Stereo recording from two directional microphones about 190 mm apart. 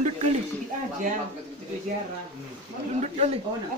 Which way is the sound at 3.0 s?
35° right (ahead or behind).